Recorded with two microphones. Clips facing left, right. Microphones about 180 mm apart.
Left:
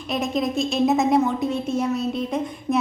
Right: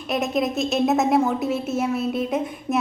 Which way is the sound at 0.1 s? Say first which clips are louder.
Right 1 dB; centre (ahead or behind).